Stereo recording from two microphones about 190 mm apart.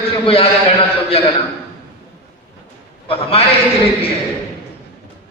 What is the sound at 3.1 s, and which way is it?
Speech, 30° left (ahead or behind).